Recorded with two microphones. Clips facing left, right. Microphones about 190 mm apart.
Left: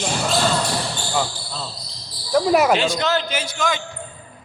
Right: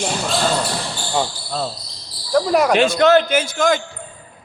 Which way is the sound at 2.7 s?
55° right (ahead or behind).